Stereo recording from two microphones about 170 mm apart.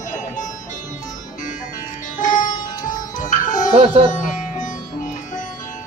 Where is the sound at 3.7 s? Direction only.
30° right (ahead or behind).